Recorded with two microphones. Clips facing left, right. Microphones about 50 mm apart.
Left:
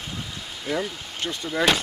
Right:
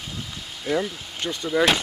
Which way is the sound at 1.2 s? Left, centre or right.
Centre.